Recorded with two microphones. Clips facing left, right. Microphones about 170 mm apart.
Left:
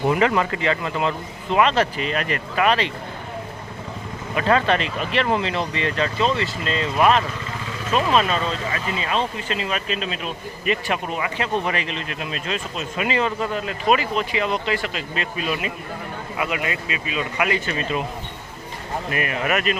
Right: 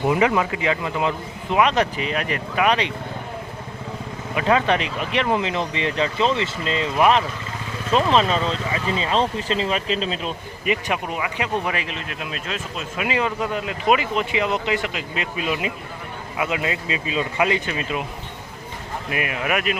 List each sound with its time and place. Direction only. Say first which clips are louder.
0.0 s speech: even; 10° right (ahead or behind)
4.4 s speech: even; 10° right (ahead or behind); by 10.3 s 30° right (ahead or behind)
10.7 s speech: even; 15° right (ahead or behind)
17.7 s speech: left 1 dB; 10° right (ahead or behind)
19.1 s speech: even; 10° right (ahead or behind)